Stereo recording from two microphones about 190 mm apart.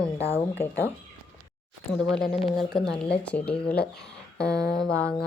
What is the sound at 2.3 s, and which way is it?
A woman's voice, centre (ahead or behind).